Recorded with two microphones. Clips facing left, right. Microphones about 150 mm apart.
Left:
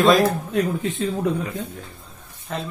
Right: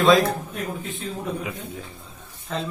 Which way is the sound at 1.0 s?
90° left.